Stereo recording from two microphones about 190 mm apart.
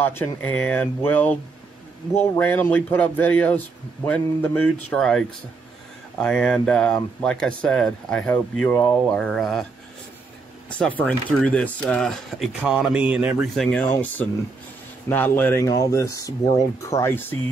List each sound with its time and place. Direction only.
0.0 s speech: 10° left (ahead or behind)
10.7 s speech: 5° left (ahead or behind)